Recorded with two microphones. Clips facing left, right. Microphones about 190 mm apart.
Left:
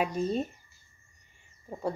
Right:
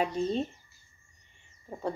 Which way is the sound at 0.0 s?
10° left (ahead or behind).